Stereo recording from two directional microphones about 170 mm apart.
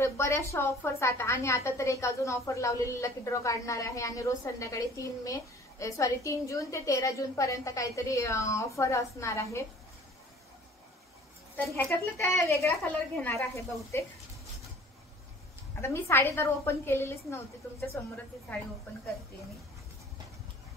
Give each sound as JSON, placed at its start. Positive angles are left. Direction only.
{"t": 0.0, "sound": "a woman's voice", "side_deg": 15}
{"t": 11.7, "sound": "a woman's voice", "side_deg": 15}
{"t": 15.8, "sound": "a woman's voice", "side_deg": 15}